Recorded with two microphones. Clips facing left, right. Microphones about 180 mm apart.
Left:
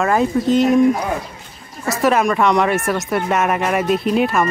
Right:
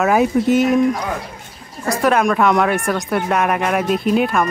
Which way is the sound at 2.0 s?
Centre (ahead or behind).